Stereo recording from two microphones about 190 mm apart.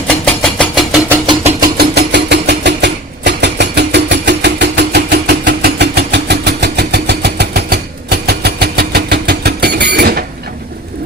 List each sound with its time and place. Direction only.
0.3 s vehicle: 5° left (ahead or behind)
1.6 s vehicle: 55° right (ahead or behind)